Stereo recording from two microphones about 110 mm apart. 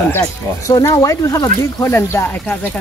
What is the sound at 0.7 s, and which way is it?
Speech, 35° left (ahead or behind).